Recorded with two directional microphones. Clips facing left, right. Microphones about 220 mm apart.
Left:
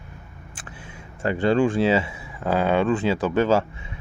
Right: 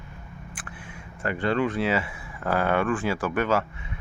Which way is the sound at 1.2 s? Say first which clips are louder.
Left 5 dB; 30° left (ahead or behind).